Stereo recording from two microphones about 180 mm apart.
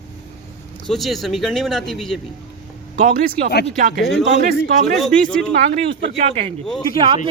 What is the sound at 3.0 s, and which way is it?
Speech, 55° right (ahead or behind).